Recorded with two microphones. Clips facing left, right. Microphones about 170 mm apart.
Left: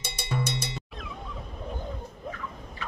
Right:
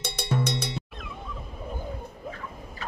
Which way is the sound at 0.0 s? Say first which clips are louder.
Right 4 dB; 65° right (ahead or behind).